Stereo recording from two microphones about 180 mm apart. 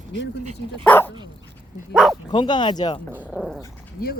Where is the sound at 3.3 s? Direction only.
Centre (ahead or behind).